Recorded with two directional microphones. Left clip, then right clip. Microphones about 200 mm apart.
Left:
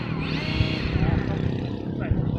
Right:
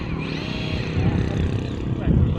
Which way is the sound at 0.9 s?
40° right (ahead or behind).